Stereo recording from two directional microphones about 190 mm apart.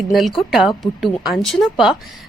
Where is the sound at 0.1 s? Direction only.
Centre (ahead or behind).